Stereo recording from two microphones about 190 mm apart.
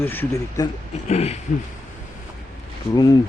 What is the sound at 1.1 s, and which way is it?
Speech, 35° left (ahead or behind).